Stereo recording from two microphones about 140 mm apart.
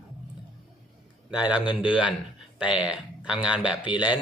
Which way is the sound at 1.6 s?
35° left (ahead or behind).